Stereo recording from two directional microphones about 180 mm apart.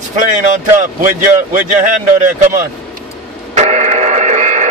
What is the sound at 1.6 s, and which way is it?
Speech, 45° right (ahead or behind).